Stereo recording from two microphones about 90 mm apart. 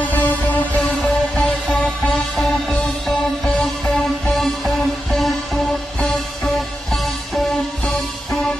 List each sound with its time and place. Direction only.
0.1 s music: 20° left (ahead or behind); by 8.5 s 5° left (ahead or behind)